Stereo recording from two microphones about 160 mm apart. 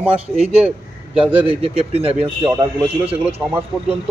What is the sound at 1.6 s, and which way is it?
Speech, 35° right (ahead or behind).